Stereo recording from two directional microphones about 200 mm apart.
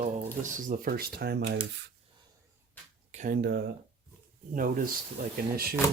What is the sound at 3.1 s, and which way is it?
Speech, 40° right (ahead or behind).